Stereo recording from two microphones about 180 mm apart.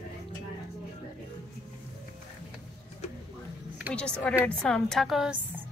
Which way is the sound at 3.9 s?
5° left (ahead or behind).